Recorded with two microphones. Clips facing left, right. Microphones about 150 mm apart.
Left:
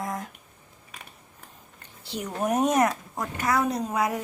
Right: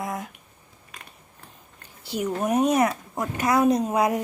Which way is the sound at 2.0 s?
10° right (ahead or behind).